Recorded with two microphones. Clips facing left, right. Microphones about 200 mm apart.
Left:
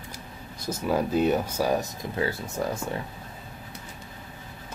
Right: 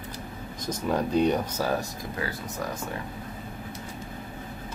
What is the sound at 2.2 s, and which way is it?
Speech, 25° left (ahead or behind).